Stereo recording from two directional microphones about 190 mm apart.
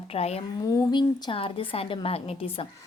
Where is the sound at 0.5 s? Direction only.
20° left (ahead or behind).